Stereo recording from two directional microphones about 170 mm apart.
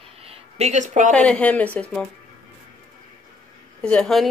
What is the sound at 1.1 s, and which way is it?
Speech, 10° left (ahead or behind).